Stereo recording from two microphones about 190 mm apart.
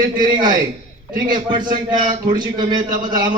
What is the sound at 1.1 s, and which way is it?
A man's voice, 25° right (ahead or behind).